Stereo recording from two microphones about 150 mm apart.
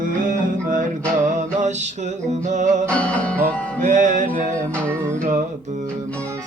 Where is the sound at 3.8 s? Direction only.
55° right (ahead or behind).